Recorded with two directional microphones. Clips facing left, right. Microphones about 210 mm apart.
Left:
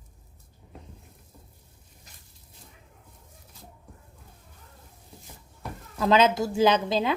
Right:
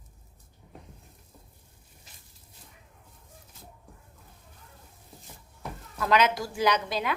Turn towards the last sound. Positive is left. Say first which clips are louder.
# left 5 dB
turn(degrees=25)  # may be behind; listen again after turning